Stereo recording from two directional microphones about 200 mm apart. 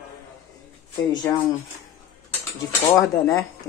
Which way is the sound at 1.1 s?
20° left (ahead or behind).